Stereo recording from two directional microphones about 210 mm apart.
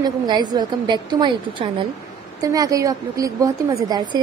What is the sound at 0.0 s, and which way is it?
A woman's voice, 20° right (ahead or behind).